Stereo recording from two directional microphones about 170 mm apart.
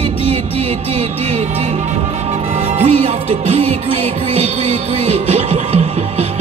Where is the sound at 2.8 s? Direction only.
35° right (ahead or behind).